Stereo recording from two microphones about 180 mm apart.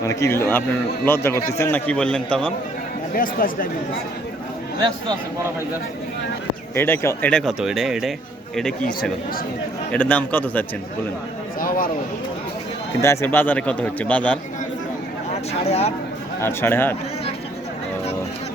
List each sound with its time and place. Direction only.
0.0 s a man's voice: 15° left (ahead or behind)
3.2 s speech: 50° left (ahead or behind)
6.7 s speech: 10° left (ahead or behind)
9.9 s a man's voice: 10° left (ahead or behind)
13.0 s a man's voice: 15° left (ahead or behind)
15.6 s speech: 35° left (ahead or behind)
16.4 s a man's voice: 15° left (ahead or behind)